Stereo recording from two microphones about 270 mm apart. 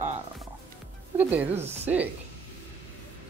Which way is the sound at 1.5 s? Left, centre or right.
Right.